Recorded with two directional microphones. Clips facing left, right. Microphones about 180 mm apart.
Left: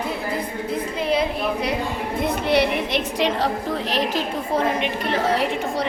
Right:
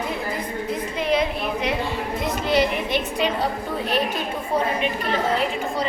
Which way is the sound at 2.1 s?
60° left (ahead or behind).